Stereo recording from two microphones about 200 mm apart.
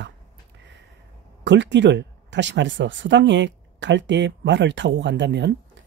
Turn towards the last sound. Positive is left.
turn(degrees=-60)  # may be behind; listen again after turning